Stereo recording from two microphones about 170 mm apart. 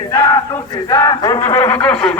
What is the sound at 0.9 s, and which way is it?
Speech, 20° left (ahead or behind).